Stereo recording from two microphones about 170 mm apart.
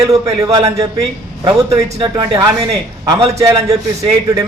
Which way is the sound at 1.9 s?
25° right (ahead or behind).